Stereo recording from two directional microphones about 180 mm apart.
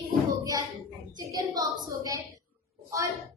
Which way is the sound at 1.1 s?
20° right (ahead or behind).